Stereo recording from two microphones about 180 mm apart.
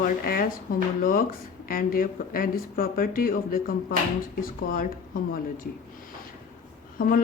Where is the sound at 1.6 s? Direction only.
50° left (ahead or behind).